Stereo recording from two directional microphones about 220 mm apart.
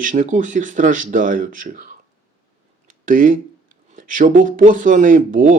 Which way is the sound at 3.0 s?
35° right (ahead or behind).